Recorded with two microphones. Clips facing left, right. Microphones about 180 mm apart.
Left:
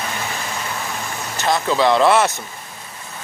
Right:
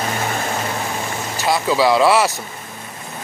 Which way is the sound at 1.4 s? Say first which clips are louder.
Right 1 dB; 5° right (ahead or behind).